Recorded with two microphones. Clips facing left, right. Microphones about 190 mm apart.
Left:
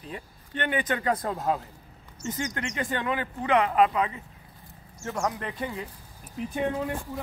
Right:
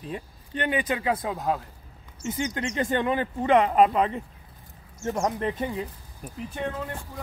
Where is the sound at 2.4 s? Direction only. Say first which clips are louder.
Right 4 dB; 25° right (ahead or behind).